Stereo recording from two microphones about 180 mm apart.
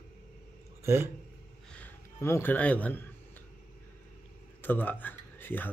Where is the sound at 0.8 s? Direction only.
15° right (ahead or behind).